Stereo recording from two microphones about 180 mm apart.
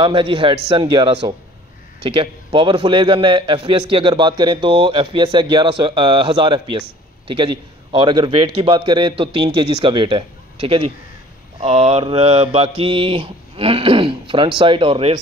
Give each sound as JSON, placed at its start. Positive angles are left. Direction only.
{"t": 0.0, "sound": "a man's voice", "side_deg": -30}
{"t": 11.6, "sound": "mantra", "side_deg": -35}